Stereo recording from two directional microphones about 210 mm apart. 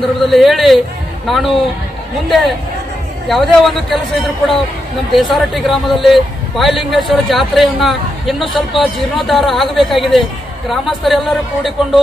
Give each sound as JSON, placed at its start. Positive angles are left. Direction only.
{"t": 0.0, "sound": "a man's voice", "side_deg": 0}
{"t": 3.3, "sound": "a man's voice", "side_deg": 0}
{"t": 5.1, "sound": "a man's voice", "side_deg": 0}